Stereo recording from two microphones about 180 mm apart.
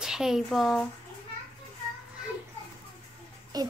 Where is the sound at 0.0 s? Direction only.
5° right (ahead or behind).